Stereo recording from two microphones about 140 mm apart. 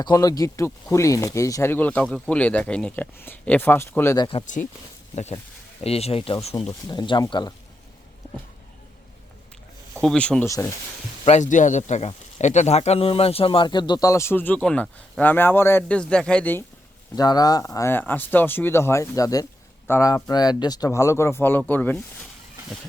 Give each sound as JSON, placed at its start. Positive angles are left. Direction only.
{"t": 0.0, "sound": "speech", "side_deg": 30}
{"t": 4.2, "sound": "speech", "side_deg": 40}
{"t": 4.4, "sound": "speech", "side_deg": 65}
{"t": 5.8, "sound": "speech", "side_deg": 45}
{"t": 10.0, "sound": "speech", "side_deg": 5}
{"t": 10.4, "sound": "speech", "side_deg": 20}
{"t": 11.3, "sound": "speech", "side_deg": 60}
{"t": 17.2, "sound": "speech", "side_deg": 25}
{"t": 17.7, "sound": "speech", "side_deg": 15}